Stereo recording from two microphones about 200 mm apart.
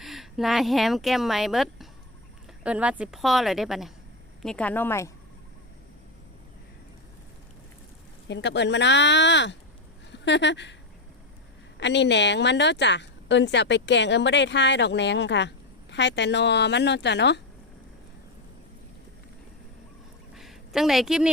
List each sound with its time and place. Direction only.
0.0 s a woman's voice: centre (ahead or behind)
8.3 s a woman's voice: 60° left (ahead or behind)
11.8 s a woman's voice: 60° left (ahead or behind)
20.3 s a sound: centre (ahead or behind)